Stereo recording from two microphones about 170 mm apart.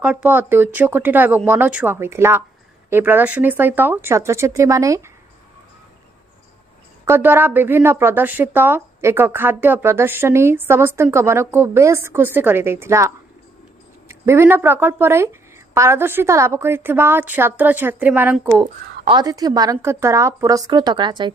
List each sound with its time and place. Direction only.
0.0 s speech: 5° right (ahead or behind)
7.1 s speech: 10° right (ahead or behind)
18.6 s a woman's voice: 25° right (ahead or behind)